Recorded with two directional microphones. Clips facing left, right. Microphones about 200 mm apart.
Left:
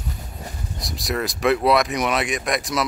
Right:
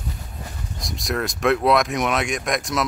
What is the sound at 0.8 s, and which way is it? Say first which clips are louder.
Speech: even; centre (ahead or behind).